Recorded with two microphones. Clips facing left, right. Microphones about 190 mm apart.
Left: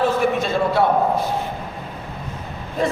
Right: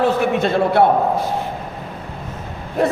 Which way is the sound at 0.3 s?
60° right (ahead or behind).